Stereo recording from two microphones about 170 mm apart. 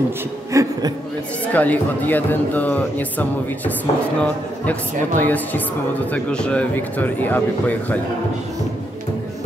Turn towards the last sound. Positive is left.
turn(degrees=10)  # may be behind; listen again after turning